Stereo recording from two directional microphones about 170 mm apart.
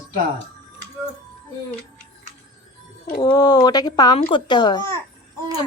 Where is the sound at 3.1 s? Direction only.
25° left (ahead or behind).